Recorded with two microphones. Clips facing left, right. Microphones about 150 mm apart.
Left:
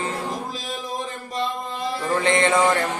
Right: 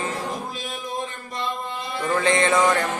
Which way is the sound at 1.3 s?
40° left (ahead or behind).